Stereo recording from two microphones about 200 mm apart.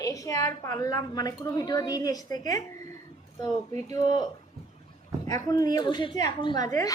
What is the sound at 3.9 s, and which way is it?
Speech, 20° left (ahead or behind).